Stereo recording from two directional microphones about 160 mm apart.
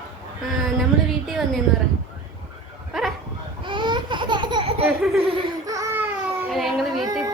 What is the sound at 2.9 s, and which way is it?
Dog, centre (ahead or behind).